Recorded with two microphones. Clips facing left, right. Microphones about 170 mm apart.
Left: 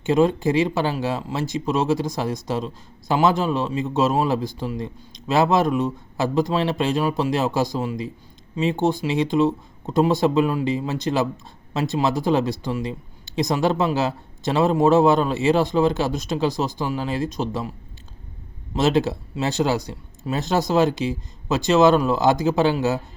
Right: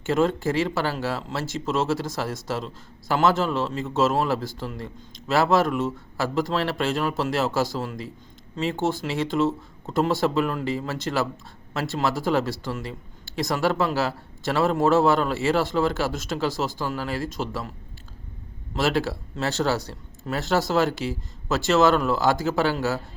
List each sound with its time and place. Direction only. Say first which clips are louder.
0.0 s speech: left 4 dB; 15° left (ahead or behind)
18.7 s speech: left 4 dB; 20° left (ahead or behind)